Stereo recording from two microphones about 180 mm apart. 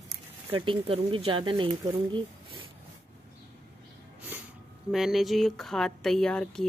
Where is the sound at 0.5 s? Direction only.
30° right (ahead or behind).